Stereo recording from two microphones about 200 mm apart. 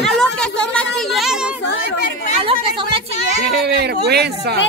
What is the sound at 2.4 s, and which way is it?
Speech, 25° right (ahead or behind).